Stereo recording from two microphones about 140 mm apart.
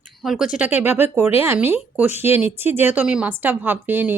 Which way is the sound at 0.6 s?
15° right (ahead or behind).